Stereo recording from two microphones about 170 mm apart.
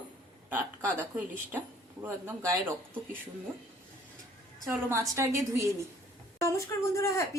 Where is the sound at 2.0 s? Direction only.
15° right (ahead or behind).